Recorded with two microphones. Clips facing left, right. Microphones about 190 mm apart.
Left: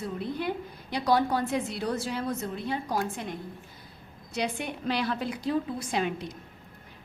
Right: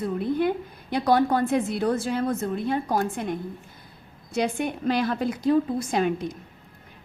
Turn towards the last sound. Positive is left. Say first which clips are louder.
# right 5 dB
turn(degrees=-45)  # may be behind; listen again after turning